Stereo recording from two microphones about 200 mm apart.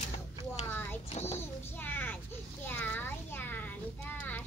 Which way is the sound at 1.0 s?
30° left (ahead or behind).